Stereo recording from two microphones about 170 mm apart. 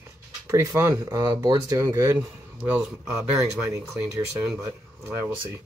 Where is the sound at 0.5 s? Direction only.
15° right (ahead or behind).